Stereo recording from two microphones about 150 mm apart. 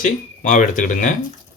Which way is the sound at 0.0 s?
60° left (ahead or behind).